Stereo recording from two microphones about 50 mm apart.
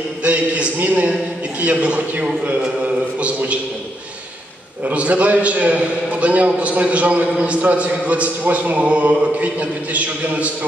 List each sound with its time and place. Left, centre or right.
0.2 s a man's voice: right
4.8 s a man's voice: right